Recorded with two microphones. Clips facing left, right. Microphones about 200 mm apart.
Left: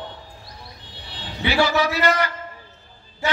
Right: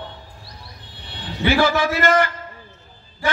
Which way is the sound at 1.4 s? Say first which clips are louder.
Right 2 dB; 50° right (ahead or behind).